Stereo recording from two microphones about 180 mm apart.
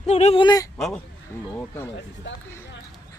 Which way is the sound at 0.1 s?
35° left (ahead or behind).